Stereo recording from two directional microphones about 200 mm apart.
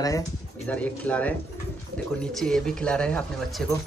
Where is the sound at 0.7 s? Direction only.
5° left (ahead or behind).